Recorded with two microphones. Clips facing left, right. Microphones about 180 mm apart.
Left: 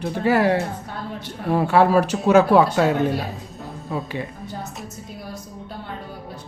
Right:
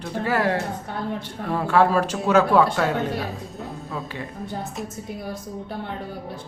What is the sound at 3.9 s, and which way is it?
Speech, 15° left (ahead or behind).